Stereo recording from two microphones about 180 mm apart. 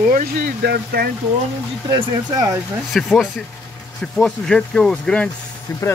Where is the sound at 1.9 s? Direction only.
20° right (ahead or behind).